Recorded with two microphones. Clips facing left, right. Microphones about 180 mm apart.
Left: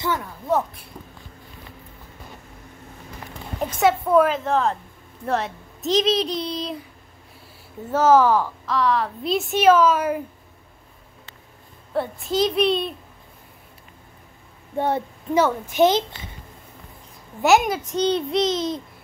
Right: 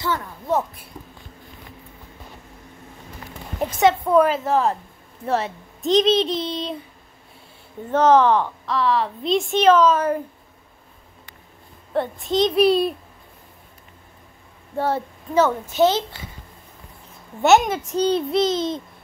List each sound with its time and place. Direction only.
3.8 s speech: 5° left (ahead or behind)
7.8 s a child's voice: 5° left (ahead or behind)
11.9 s speech: 5° left (ahead or behind)
14.8 s a child's voice: 15° left (ahead or behind)
17.4 s speech: centre (ahead or behind)